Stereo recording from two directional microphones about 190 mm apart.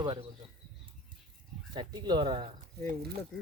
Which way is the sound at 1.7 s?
25° right (ahead or behind).